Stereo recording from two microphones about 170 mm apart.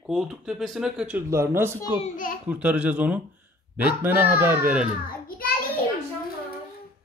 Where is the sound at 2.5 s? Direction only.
10° right (ahead or behind).